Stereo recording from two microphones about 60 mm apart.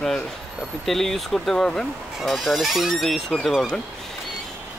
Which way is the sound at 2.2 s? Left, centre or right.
Centre.